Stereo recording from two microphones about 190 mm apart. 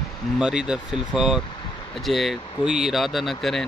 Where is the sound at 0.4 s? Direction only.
5° right (ahead or behind).